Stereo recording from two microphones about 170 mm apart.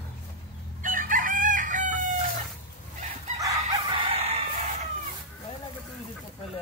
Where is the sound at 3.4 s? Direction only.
20° right (ahead or behind).